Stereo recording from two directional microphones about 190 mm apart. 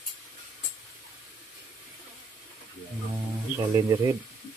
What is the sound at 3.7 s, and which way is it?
Speech, 15° right (ahead or behind).